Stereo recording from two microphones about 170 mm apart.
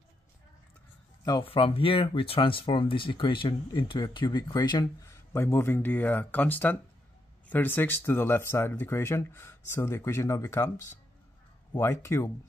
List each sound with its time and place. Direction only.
1.2 s speech: 20° left (ahead or behind)
1.5 s speech: 35° left (ahead or behind); by 12.3 s 15° left (ahead or behind)